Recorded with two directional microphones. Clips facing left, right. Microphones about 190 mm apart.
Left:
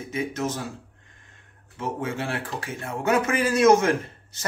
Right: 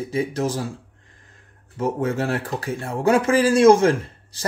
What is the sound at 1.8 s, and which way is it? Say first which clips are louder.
Speech: right 6 dB; 40° right (ahead or behind).